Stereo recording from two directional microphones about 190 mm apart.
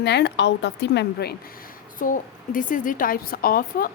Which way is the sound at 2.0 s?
45° left (ahead or behind).